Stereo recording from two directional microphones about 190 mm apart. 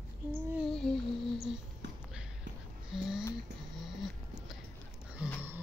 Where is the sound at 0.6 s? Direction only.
Centre (ahead or behind).